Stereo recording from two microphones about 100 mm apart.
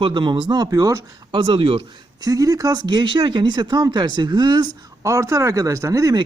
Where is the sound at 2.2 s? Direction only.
35° right (ahead or behind).